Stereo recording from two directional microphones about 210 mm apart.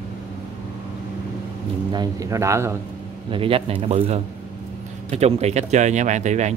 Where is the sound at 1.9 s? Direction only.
20° right (ahead or behind).